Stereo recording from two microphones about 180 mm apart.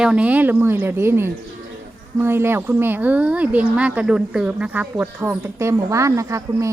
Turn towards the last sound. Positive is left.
turn(degrees=-15)  # may be behind; listen again after turning